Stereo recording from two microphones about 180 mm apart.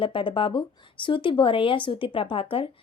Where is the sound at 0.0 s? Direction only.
30° left (ahead or behind).